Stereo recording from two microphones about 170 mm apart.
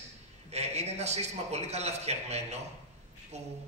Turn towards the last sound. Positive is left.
turn(degrees=-40)  # may be behind; listen again after turning